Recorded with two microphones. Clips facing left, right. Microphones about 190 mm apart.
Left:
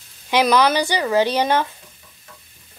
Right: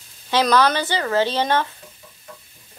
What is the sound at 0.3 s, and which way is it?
Speech, 15° left (ahead or behind).